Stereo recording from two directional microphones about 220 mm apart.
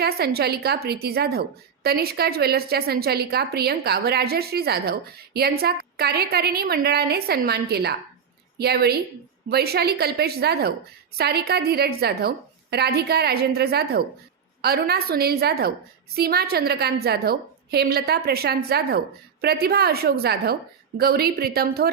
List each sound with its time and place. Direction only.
0.0 s a woman's voice: 45° right (ahead or behind)